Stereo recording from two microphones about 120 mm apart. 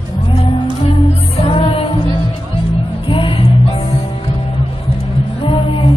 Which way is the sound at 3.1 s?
45° left (ahead or behind).